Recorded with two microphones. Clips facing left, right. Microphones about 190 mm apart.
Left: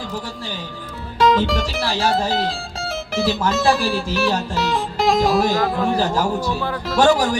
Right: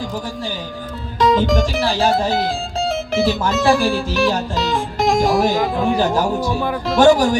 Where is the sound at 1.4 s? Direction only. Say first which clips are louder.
Right 4 dB; 55° right (ahead or behind).